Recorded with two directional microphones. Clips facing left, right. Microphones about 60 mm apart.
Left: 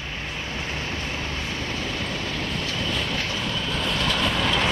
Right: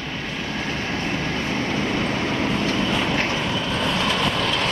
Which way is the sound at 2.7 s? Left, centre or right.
Right.